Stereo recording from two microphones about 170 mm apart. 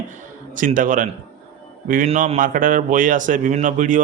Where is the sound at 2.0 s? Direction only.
45° right (ahead or behind).